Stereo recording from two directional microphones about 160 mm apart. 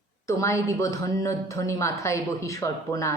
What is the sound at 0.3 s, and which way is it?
A woman's voice, 20° left (ahead or behind).